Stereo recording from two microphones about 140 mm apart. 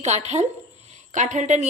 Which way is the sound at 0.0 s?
55° right (ahead or behind).